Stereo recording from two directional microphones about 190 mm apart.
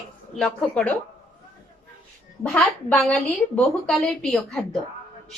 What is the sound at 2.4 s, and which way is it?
A child's voice, 5° left (ahead or behind).